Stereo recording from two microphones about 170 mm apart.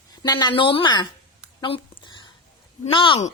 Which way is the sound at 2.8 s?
30° left (ahead or behind).